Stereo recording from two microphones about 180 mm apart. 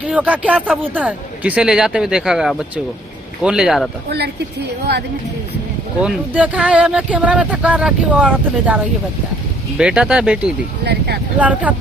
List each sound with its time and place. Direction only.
0.0 s speech: 5° right (ahead or behind)
5.9 s speech: 5° right (ahead or behind)